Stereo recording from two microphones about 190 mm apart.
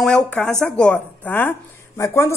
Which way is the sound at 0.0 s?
5° left (ahead or behind).